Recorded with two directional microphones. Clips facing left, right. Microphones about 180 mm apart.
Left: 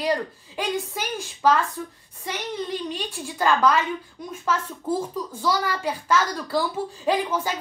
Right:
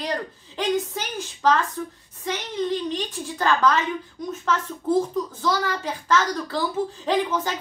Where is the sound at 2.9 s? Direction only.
10° left (ahead or behind).